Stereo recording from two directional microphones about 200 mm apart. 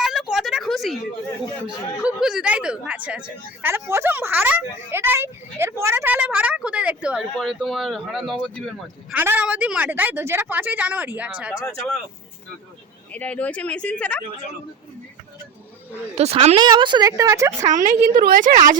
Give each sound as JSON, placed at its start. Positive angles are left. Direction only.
{"t": 0.0, "sound": "a sound", "side_deg": 0}
{"t": 2.0, "sound": "a woman's voice", "side_deg": -5}
{"t": 13.1, "sound": "speech", "side_deg": 5}
{"t": 16.1, "sound": "speech", "side_deg": -30}
{"t": 17.7, "sound": "a woman's voice", "side_deg": -40}